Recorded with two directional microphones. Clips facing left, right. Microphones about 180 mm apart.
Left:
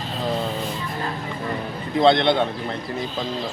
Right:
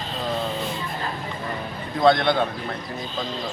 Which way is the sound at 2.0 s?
25° left (ahead or behind).